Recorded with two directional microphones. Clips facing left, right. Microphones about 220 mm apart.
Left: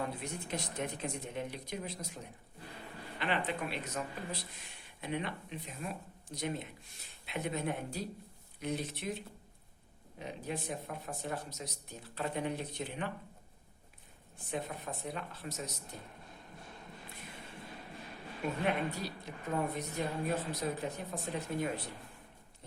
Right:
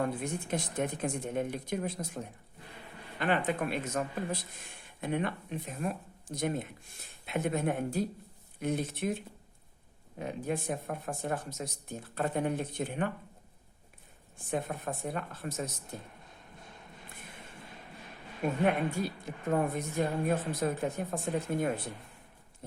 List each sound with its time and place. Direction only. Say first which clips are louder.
0.0 s speech: right 6 dB; 50° right (ahead or behind)
10.2 s speech: right 6 dB; 50° right (ahead or behind)
14.5 s speech: right 5 dB; 50° right (ahead or behind)
18.6 s speech: right 6 dB; 50° right (ahead or behind)